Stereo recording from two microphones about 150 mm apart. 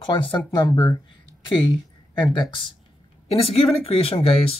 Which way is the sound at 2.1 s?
30° left (ahead or behind).